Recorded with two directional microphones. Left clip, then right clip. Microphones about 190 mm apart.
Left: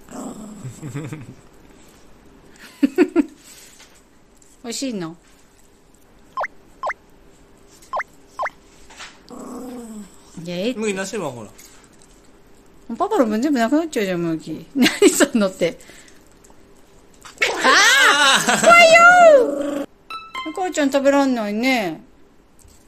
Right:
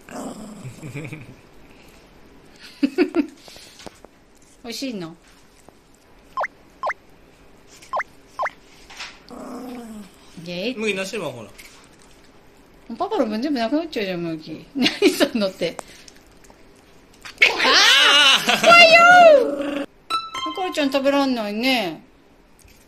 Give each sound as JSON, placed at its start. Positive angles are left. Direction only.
{"t": 0.1, "sound": "dog", "side_deg": 5}
{"t": 0.7, "sound": "speech", "side_deg": 55}
{"t": 2.6, "sound": "a sound", "side_deg": 25}
{"t": 4.6, "sound": "speech", "side_deg": 25}
{"t": 6.3, "sound": "a sound", "side_deg": 0}
{"t": 9.3, "sound": "dog", "side_deg": 10}
{"t": 10.4, "sound": "speech", "side_deg": 35}
{"t": 12.9, "sound": "speech", "side_deg": 35}
{"t": 17.4, "sound": "baby cry", "side_deg": 30}
{"t": 19.0, "sound": "speech", "side_deg": 30}
{"t": 19.6, "sound": "a sound", "side_deg": 20}
{"t": 20.5, "sound": "speech", "side_deg": 30}